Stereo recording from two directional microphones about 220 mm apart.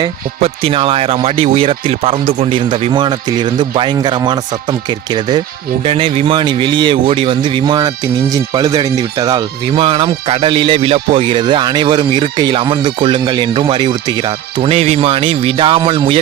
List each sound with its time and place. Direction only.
0.0 s speech: 25° right (ahead or behind)